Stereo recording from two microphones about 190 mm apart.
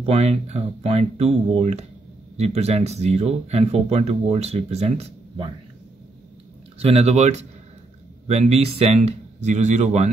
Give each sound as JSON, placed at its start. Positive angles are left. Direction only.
{"t": 0.0, "sound": "speech", "side_deg": -35}
{"t": 6.8, "sound": "speech", "side_deg": -35}